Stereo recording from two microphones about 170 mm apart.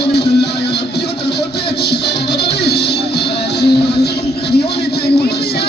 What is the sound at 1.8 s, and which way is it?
Music, 75° left (ahead or behind).